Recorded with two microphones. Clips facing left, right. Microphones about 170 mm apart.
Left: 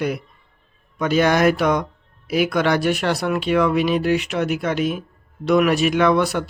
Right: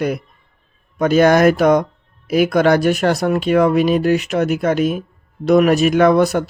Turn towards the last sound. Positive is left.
turn(degrees=-45)  # may be behind; listen again after turning